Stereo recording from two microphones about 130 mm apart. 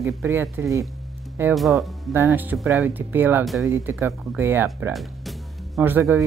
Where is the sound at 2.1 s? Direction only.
20° right (ahead or behind).